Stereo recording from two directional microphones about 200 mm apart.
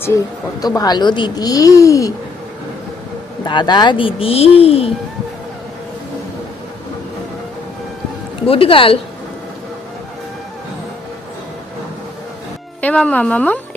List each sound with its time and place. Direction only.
0.6 s speech: 20° left (ahead or behind)
3.4 s a woman's voice: 20° left (ahead or behind)
8.4 s a woman's voice: 25° left (ahead or behind)
12.8 s speech: 5° left (ahead or behind)